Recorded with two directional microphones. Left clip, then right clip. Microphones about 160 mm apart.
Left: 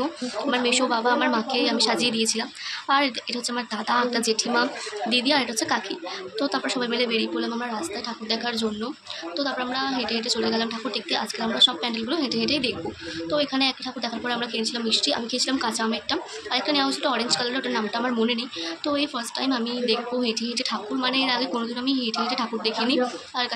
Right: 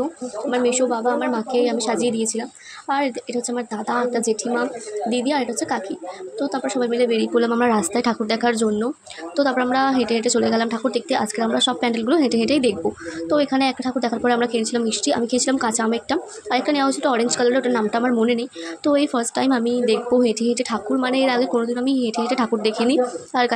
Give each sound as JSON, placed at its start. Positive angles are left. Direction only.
{"t": 0.5, "sound": "a woman's voice", "side_deg": -25}
{"t": 7.3, "sound": "a woman's voice", "side_deg": -60}
{"t": 18.9, "sound": "speech", "side_deg": -55}